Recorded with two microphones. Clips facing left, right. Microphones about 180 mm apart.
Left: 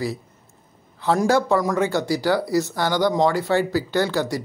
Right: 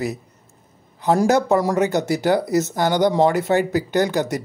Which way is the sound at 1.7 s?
20° right (ahead or behind).